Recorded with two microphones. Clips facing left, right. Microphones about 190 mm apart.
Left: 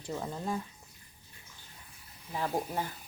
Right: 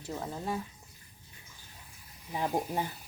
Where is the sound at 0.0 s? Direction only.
5° right (ahead or behind).